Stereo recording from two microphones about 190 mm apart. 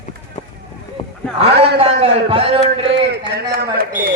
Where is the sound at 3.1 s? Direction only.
55° right (ahead or behind).